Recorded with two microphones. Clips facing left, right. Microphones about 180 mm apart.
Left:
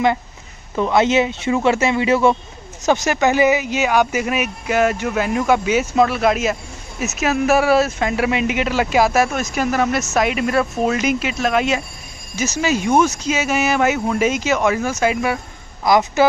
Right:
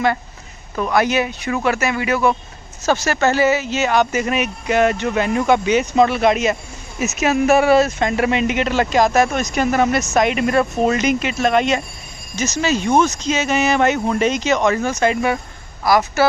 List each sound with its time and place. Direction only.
0.7 s speech: 25° left (ahead or behind); by 15.3 s 5° left (ahead or behind)
15.8 s speech: 20° left (ahead or behind)